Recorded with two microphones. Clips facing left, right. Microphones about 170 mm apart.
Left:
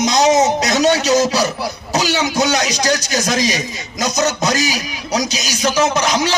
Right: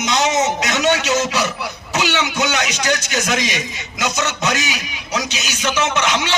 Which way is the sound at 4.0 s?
40° left (ahead or behind).